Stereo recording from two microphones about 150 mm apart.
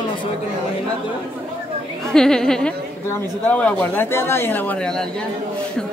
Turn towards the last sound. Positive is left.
turn(degrees=5)  # may be behind; listen again after turning